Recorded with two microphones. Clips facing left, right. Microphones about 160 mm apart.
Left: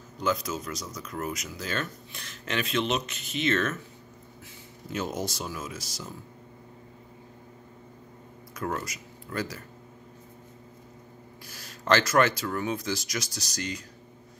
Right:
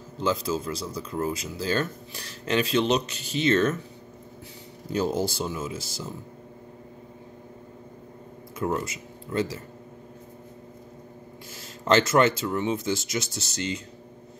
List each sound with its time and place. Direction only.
0.2 s speech: 30° right (ahead or behind)
4.9 s speech: 30° right (ahead or behind)
8.5 s speech: 25° right (ahead or behind)
11.9 s speech: 25° right (ahead or behind)